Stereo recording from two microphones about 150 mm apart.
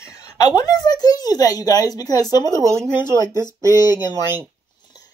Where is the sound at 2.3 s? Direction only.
25° left (ahead or behind).